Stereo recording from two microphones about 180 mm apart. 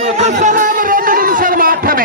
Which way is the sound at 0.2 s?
45° right (ahead or behind).